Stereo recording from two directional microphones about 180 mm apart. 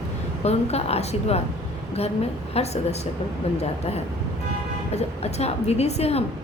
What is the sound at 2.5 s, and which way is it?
Speech, 35° left (ahead or behind).